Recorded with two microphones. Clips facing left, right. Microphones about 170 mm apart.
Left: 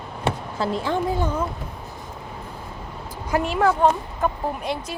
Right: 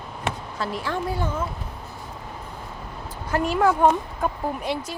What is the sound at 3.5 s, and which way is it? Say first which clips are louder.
Speech: right 1 dB; 5° right (ahead or behind).